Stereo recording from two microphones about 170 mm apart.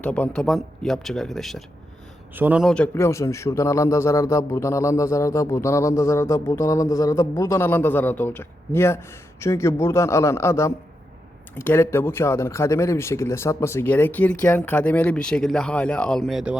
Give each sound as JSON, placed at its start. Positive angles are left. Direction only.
{"t": 0.0, "sound": "speech", "side_deg": 10}
{"t": 2.3, "sound": "a man's voice", "side_deg": -10}